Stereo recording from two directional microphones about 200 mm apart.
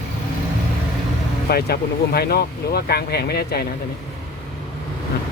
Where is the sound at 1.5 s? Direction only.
50° left (ahead or behind).